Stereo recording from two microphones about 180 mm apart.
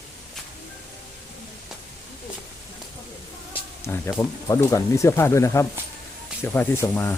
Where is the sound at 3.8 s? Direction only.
15° left (ahead or behind).